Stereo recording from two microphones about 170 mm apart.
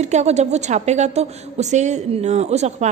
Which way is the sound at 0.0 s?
40° right (ahead or behind).